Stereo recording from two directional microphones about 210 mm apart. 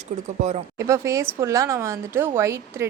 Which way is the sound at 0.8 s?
15° right (ahead or behind).